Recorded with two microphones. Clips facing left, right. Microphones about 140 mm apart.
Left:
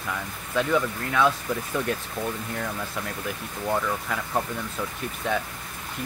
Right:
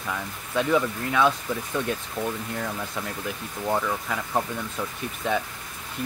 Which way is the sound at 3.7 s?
10° right (ahead or behind).